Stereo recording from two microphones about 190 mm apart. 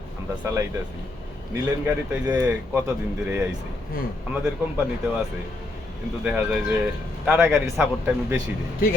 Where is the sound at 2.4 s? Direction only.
10° right (ahead or behind).